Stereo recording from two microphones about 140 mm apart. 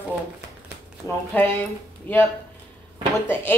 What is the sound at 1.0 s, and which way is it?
Speech, 15° left (ahead or behind).